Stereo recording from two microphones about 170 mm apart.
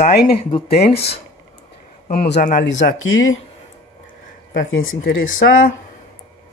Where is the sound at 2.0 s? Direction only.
65° left (ahead or behind).